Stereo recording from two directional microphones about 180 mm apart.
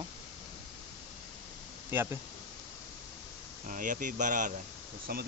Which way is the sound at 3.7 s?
45° right (ahead or behind).